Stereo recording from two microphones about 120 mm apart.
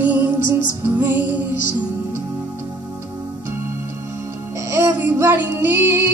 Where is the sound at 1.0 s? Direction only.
15° right (ahead or behind).